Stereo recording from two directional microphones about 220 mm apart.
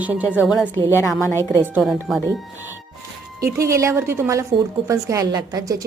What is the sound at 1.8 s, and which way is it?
Speech, centre (ahead or behind).